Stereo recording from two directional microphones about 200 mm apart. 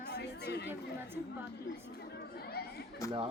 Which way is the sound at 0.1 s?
55° left (ahead or behind).